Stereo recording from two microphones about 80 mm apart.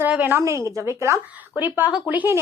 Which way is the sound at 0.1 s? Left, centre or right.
Centre.